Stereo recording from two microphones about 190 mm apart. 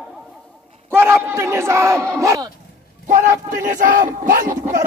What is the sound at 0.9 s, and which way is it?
Battle cry, 10° right (ahead or behind).